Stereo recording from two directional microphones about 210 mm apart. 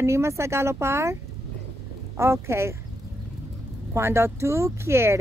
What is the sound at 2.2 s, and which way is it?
Speech, 10° right (ahead or behind).